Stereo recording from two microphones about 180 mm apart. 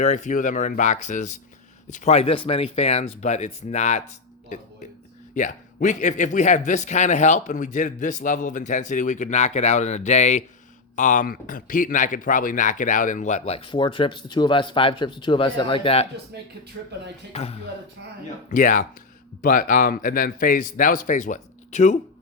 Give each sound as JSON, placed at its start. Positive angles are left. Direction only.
{"t": 0.0, "sound": "a man's voice", "side_deg": 45}
{"t": 16.3, "sound": "speech", "side_deg": -60}
{"t": 17.3, "sound": "a man's voice", "side_deg": 35}
{"t": 18.5, "sound": "a man's voice", "side_deg": 45}